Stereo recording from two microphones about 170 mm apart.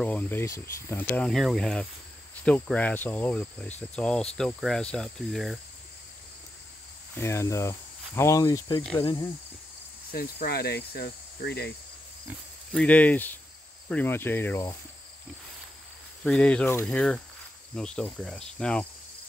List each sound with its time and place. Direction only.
0.0 s speech: 10° left (ahead or behind)
3.9 s cricket: 5° left (ahead or behind)
7.2 s speech: 15° left (ahead or behind)
10.1 s cricket: 65° left (ahead or behind)
12.7 s speech: 10° left (ahead or behind)
16.3 s speech: 5° left (ahead or behind)
17.7 s cricket: 5° left (ahead or behind)